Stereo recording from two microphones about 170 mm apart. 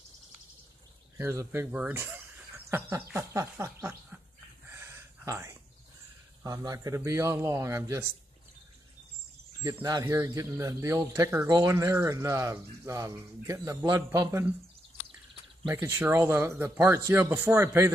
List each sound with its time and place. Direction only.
1.1 s speech: 15° right (ahead or behind)
4.6 s a sound: 15° right (ahead or behind)
6.4 s speech: 20° right (ahead or behind)
9.8 s speech: 20° right (ahead or behind)
15.6 s speech: 15° right (ahead or behind)